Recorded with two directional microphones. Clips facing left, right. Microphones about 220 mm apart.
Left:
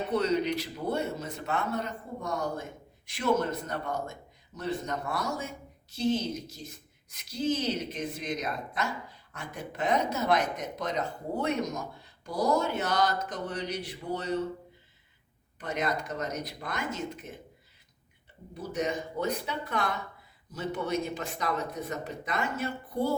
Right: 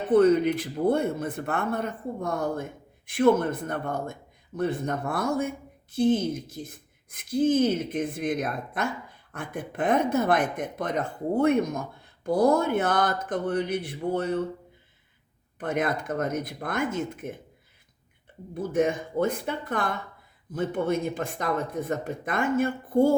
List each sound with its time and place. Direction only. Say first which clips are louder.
0.1 s a man's voice: right 9 dB; 50° right (ahead or behind)
15.5 s a man's voice: right 4 dB; 55° right (ahead or behind)
18.5 s a man's voice: right 7 dB; 50° right (ahead or behind)